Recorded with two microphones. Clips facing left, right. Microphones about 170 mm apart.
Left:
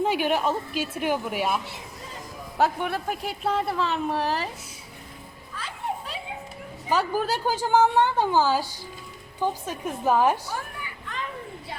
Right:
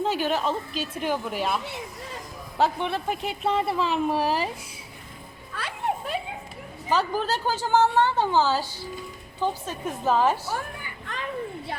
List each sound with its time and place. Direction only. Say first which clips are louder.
0.0 s a woman's voice: left 1 dB; 10° left (ahead or behind); by 4.4 s 5° right (ahead or behind)
5.5 s children playing: right 3 dB; 70° right (ahead or behind)
6.9 s a woman's voice: even; 10° left (ahead or behind)